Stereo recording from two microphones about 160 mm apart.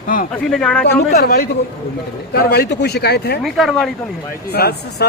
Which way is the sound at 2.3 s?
85° left.